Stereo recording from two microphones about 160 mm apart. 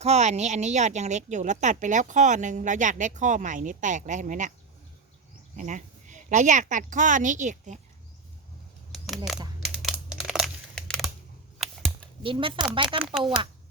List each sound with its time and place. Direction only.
0.0 s speech: 45° right (ahead or behind)
5.5 s a woman's voice: 50° right (ahead or behind)
9.0 s speech: centre (ahead or behind)
9.7 s crumpling: 5° right (ahead or behind)
12.2 s speech: 35° right (ahead or behind)